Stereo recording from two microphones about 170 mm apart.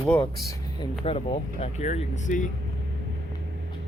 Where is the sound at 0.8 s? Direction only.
30° left (ahead or behind).